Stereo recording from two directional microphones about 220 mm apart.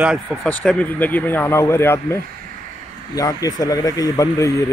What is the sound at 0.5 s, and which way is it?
Speech, 5° left (ahead or behind).